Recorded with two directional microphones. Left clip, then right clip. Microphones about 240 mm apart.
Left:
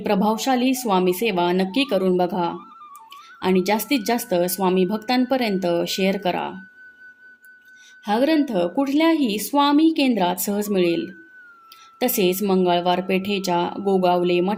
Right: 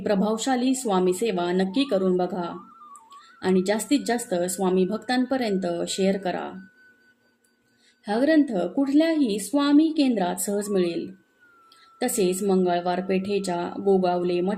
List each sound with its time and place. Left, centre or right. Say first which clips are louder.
0.0 s speech: left 3 dB; left
8.0 s speech: left 2 dB; left